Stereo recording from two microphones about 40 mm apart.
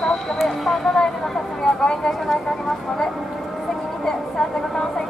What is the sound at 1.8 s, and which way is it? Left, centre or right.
Vehicle, centre.